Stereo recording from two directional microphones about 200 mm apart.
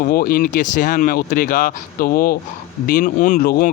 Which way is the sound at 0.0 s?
50° left (ahead or behind).